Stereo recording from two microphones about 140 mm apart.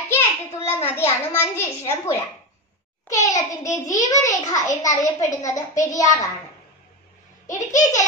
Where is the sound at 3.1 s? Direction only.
25° left (ahead or behind).